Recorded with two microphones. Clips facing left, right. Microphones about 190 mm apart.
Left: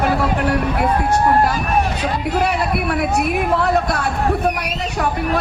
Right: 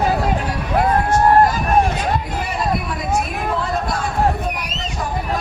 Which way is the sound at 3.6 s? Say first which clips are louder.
Left 4 dB; 65° left (ahead or behind).